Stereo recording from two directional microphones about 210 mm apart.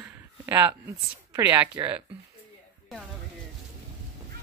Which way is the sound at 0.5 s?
20° right (ahead or behind).